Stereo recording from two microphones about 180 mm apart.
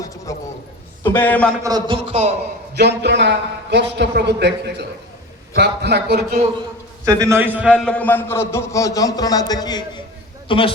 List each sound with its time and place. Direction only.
0.0 s a man's voice: 20° left (ahead or behind)
1.6 s a man's voice: 20° right (ahead or behind)
2.0 s a man's voice: 35° right (ahead or behind)
2.7 s a man's voice: 65° right (ahead or behind)
7.0 s a man's voice: 15° right (ahead or behind)
7.9 s a man's voice: 10° left (ahead or behind); by 10.8 s 30° left (ahead or behind)